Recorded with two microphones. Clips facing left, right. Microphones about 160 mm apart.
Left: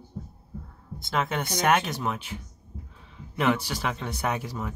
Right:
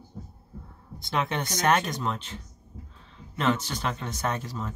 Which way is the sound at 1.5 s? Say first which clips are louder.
Left 1 dB; 10° left (ahead or behind).